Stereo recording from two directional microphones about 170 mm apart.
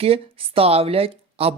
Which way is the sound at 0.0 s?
35° right (ahead or behind).